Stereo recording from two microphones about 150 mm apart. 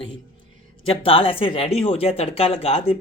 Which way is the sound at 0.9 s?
40° left (ahead or behind).